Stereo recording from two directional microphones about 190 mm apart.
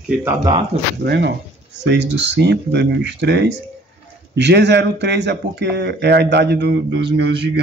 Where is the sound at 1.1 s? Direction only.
60° right (ahead or behind).